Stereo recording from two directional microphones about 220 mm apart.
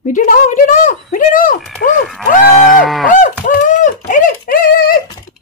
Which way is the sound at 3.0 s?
35° left (ahead or behind).